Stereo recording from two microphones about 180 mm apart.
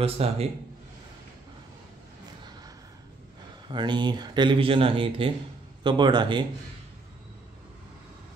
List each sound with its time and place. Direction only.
0.0 s a man's voice: 35° right (ahead or behind)
3.6 s speech: 25° right (ahead or behind)